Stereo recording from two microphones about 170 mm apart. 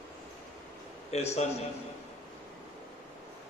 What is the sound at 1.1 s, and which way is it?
Speech, 40° left (ahead or behind).